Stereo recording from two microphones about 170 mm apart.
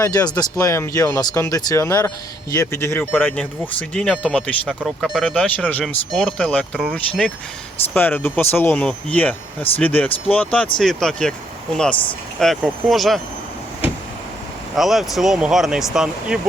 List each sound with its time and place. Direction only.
0.0 s speech: 20° left (ahead or behind); by 5.4 s 5° right (ahead or behind)
5.4 s speech: 10° left (ahead or behind)
12.4 s speech: centre (ahead or behind)
14.8 s speech: centre (ahead or behind)